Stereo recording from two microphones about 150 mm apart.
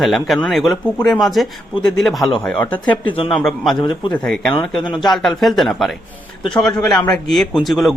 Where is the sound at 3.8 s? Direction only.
30° left (ahead or behind).